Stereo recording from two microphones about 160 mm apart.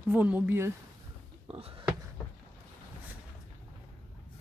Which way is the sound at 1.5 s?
35° right (ahead or behind).